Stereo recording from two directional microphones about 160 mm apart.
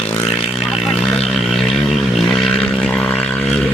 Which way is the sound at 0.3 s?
5° right (ahead or behind).